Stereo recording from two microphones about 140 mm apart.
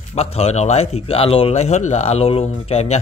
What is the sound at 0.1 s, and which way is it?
Speech, 45° left (ahead or behind).